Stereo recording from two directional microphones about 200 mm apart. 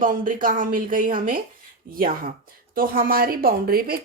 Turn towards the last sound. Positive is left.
turn(degrees=-50)  # may be behind; listen again after turning